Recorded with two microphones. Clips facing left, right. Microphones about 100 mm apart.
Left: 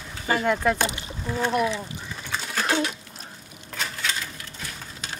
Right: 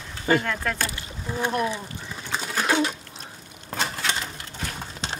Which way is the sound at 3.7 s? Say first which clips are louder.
Right 3 dB; 30° right (ahead or behind).